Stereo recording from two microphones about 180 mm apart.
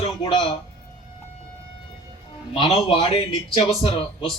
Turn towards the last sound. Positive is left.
turn(degrees=30)  # may be behind; listen again after turning